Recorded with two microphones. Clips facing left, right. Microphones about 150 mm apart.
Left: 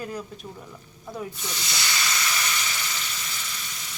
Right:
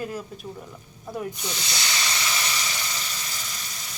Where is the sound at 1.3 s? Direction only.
15° right (ahead or behind).